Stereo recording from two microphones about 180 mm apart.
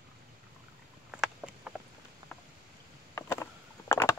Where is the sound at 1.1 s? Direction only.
5° right (ahead or behind).